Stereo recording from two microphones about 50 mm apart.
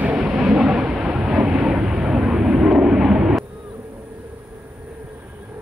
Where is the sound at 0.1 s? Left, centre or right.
Centre.